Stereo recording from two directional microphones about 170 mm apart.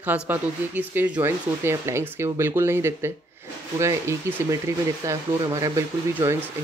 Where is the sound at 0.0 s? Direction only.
10° right (ahead or behind).